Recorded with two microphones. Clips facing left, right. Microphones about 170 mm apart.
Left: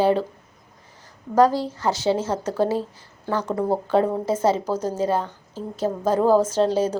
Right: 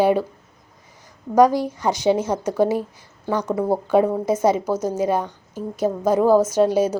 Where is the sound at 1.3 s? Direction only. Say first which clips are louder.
Right 2 dB; 15° right (ahead or behind).